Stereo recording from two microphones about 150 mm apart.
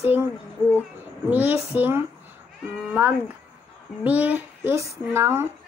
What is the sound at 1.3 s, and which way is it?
Speech, 10° right (ahead or behind).